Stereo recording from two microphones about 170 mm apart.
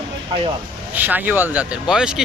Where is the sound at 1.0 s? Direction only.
10° right (ahead or behind).